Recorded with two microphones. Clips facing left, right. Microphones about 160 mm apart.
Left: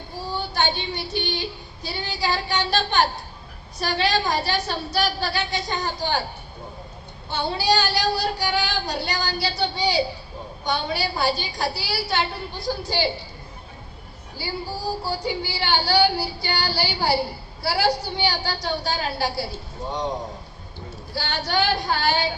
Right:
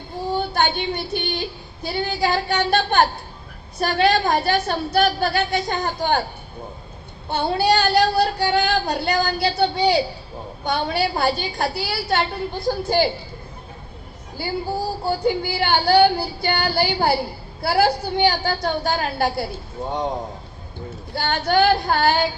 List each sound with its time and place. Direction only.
0.3 s a woman's voice: 55° right (ahead or behind)
7.3 s child singing: 55° right (ahead or behind)
14.4 s a woman's voice: 55° right (ahead or behind)
21.2 s a woman's voice: 50° right (ahead or behind)